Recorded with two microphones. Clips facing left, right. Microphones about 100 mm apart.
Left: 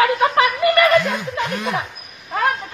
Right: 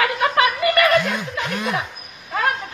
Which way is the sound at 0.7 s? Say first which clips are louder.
Left 2 dB; 30° left (ahead or behind).